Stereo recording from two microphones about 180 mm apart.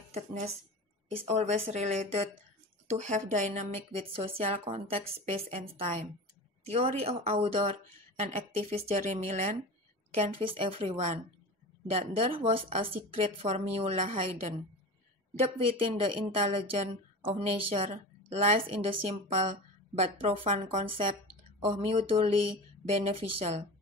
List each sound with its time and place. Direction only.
0.1 s a woman's voice: 40° right (ahead or behind)
4.4 s a woman's voice: 30° right (ahead or behind)
15.8 s a woman's voice: 35° right (ahead or behind)